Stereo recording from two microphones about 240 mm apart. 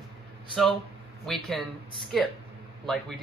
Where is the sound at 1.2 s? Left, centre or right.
Centre.